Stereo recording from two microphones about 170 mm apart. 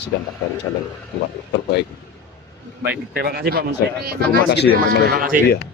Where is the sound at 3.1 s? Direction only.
70° right (ahead or behind).